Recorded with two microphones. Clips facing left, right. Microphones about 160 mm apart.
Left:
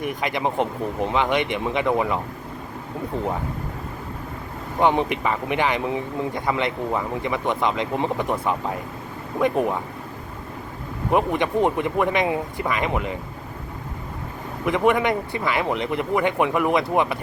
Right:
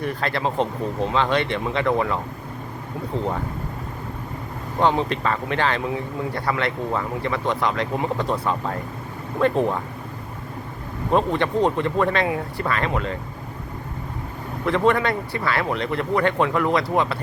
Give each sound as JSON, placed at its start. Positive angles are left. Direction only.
{"t": 0.0, "sound": "speech", "side_deg": 15}
{"t": 4.8, "sound": "speech", "side_deg": 15}
{"t": 11.1, "sound": "speech", "side_deg": 15}
{"t": 14.6, "sound": "speech", "side_deg": 15}